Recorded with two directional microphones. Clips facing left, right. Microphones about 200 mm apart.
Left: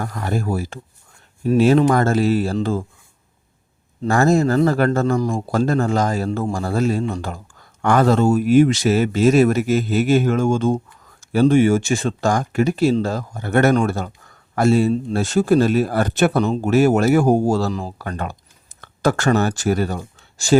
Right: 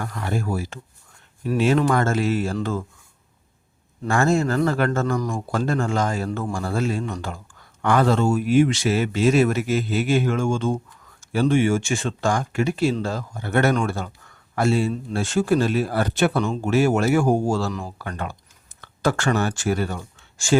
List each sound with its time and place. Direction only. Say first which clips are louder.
0.0 s speech: left 3 dB; 40° left (ahead or behind)
4.1 s speech: left 4 dB; 35° left (ahead or behind)